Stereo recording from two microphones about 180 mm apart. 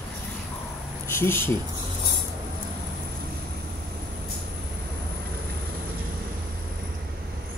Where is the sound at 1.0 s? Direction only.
15° left (ahead or behind).